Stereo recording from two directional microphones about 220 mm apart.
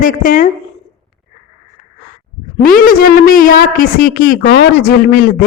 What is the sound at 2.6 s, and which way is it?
A woman's voice, 40° left (ahead or behind).